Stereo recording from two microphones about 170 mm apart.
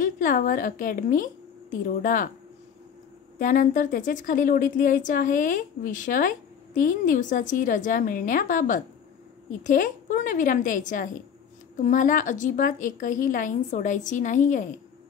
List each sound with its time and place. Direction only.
0.0 s a woman's voice: 55° left (ahead or behind)
3.3 s a woman's voice: 50° left (ahead or behind)